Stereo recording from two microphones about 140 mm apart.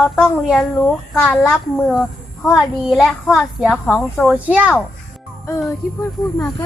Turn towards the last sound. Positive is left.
turn(degrees=15)  # may be behind; listen again after turning